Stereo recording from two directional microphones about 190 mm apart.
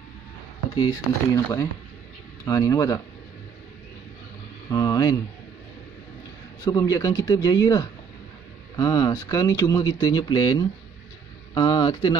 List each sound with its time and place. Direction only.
0.7 s speech: 20° left (ahead or behind)
4.6 s speech: 15° left (ahead or behind)
6.6 s speech: 20° left (ahead or behind)